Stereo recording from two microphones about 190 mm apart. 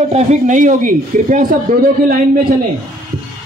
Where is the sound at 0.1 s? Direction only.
40° right (ahead or behind).